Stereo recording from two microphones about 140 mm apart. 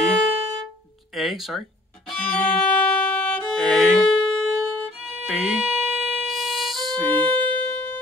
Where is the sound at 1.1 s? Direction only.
Centre (ahead or behind).